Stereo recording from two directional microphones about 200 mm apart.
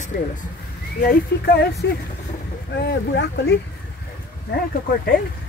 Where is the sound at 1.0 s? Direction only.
55° left (ahead or behind).